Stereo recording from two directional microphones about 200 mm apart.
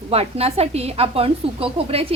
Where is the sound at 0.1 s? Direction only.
30° right (ahead or behind).